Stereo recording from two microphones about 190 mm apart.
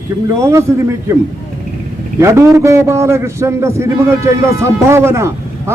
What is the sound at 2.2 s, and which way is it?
A man's voice, 15° right (ahead or behind).